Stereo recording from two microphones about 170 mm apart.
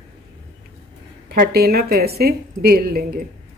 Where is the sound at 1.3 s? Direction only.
65° right (ahead or behind).